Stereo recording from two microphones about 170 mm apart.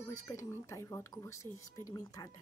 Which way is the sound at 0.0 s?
15° left (ahead or behind).